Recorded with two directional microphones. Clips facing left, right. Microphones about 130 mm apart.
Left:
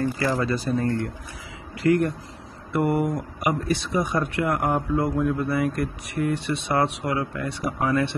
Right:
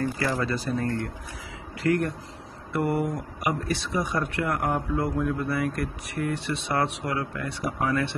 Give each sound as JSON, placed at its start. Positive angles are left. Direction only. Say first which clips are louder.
{"t": 0.4, "sound": "speech", "louder": "left 3 dB", "side_deg": 20}